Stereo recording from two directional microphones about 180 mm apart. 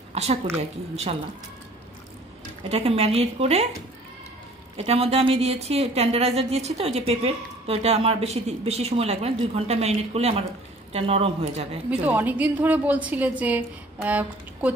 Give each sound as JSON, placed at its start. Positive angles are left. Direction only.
{"t": 0.1, "sound": "a woman's voice", "side_deg": -35}
{"t": 2.7, "sound": "a woman's voice", "side_deg": -35}
{"t": 4.7, "sound": "a woman's voice", "side_deg": -35}
{"t": 11.9, "sound": "a woman's voice", "side_deg": -10}